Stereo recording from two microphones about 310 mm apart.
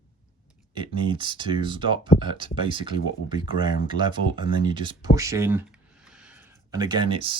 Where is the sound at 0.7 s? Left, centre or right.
Centre.